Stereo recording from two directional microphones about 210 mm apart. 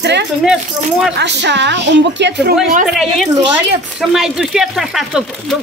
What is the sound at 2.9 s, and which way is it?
Speech, centre (ahead or behind).